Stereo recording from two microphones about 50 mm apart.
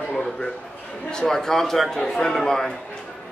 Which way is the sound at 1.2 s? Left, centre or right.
Centre.